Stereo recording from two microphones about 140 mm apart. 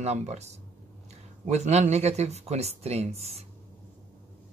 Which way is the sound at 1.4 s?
55° right (ahead or behind).